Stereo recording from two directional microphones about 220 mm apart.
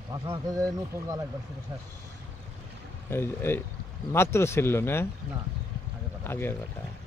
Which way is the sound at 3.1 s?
10° left (ahead or behind).